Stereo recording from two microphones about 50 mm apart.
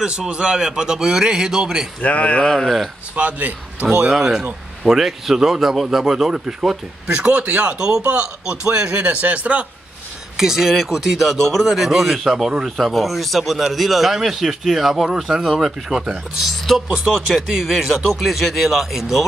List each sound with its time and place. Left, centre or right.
0.0 s speech: centre
2.0 s speech: left
2.4 s speech: centre
3.2 s speech: right
4.1 s speech: centre
7.1 s speech: right
8.9 s speech: right
10.3 s speech: centre
15.4 s speech: centre